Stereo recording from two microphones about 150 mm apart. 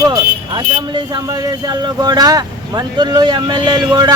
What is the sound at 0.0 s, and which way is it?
Vehicle, 25° right (ahead or behind).